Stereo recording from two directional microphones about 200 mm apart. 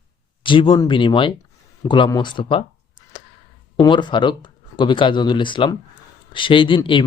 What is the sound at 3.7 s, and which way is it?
Speech, 20° left (ahead or behind).